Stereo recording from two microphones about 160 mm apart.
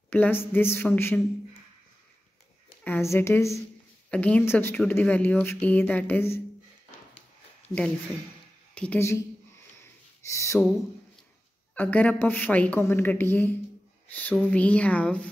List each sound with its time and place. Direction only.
0.1 s speech: 10° left (ahead or behind)
2.8 s speech: 15° left (ahead or behind)
8.7 s speech: 10° left (ahead or behind)
10.2 s speech: 20° left (ahead or behind)
11.7 s speech: 10° left (ahead or behind)